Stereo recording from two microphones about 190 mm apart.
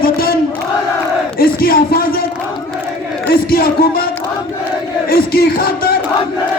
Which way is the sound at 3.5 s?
50° left (ahead or behind).